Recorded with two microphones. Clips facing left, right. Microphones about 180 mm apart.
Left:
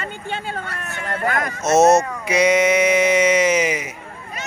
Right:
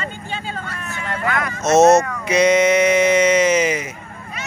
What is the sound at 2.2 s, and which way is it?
Sheep, 10° left (ahead or behind).